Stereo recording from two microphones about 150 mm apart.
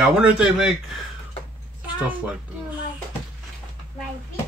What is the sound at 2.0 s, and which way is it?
Speech, 10° right (ahead or behind).